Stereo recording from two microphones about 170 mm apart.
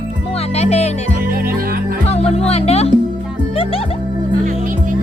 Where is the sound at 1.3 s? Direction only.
60° right (ahead or behind).